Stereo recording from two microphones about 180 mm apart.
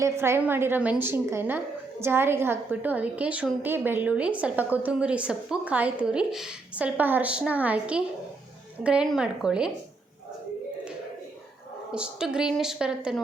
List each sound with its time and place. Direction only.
0.0 s a woman's voice: 15° right (ahead or behind)
11.9 s speech: 5° right (ahead or behind)